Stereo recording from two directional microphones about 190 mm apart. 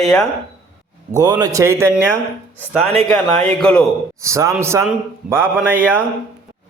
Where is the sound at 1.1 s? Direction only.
20° right (ahead or behind).